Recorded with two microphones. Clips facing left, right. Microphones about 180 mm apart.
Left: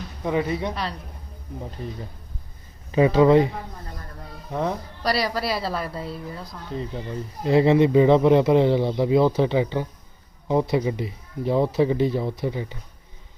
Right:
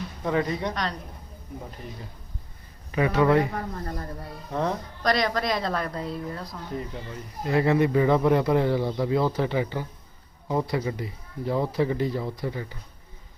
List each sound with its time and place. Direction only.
0.3 s speech: 15° left (ahead or behind)
0.7 s a woman's voice: 5° left (ahead or behind)
2.9 s speech: 25° left (ahead or behind)
4.5 s a woman's voice: 15° left (ahead or behind)
7.4 s speech: 25° left (ahead or behind)